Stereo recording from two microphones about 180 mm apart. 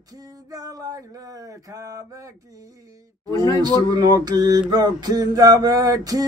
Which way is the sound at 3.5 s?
20° right (ahead or behind).